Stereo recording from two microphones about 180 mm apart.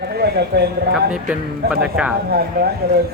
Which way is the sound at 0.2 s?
65° right (ahead or behind).